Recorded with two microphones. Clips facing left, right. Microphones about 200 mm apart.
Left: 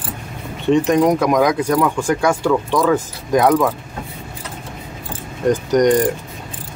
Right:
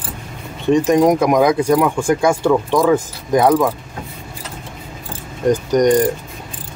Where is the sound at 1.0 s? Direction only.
15° right (ahead or behind).